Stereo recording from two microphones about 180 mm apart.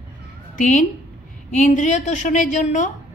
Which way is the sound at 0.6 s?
45° left (ahead or behind).